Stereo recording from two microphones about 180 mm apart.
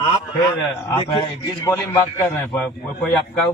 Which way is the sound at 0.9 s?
25° left (ahead or behind).